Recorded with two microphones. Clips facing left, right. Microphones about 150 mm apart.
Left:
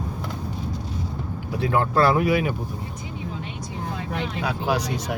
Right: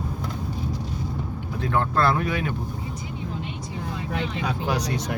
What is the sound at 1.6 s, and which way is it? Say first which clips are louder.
Speech: left 3 dB; 10° left (ahead or behind).